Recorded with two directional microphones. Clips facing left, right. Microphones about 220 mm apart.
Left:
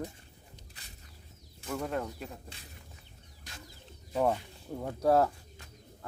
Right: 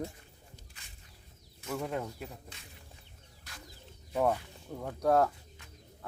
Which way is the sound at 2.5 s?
30° left (ahead or behind).